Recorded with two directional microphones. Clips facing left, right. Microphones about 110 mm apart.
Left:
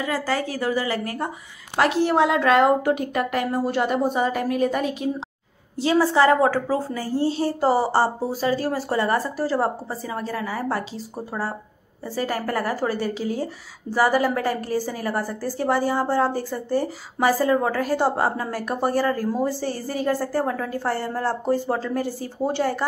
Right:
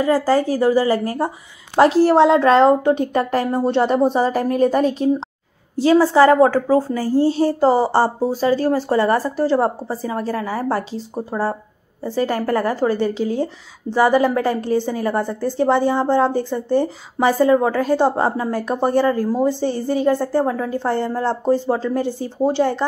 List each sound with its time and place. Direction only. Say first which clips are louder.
0.0 s a woman's voice: right 8 dB; 40° right (ahead or behind); by 22.8 s 20° right (ahead or behind)